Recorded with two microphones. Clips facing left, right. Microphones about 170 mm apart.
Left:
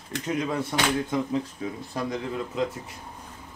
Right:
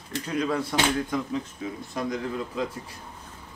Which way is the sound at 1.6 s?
35° left (ahead or behind).